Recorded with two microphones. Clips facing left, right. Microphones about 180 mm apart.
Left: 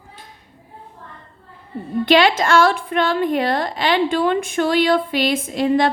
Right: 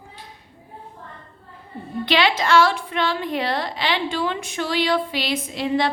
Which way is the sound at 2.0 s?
50° left (ahead or behind).